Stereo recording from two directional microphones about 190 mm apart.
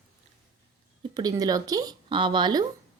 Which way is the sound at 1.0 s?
20° right (ahead or behind).